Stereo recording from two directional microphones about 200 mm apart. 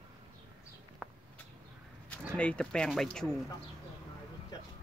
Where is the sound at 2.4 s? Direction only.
5° left (ahead or behind).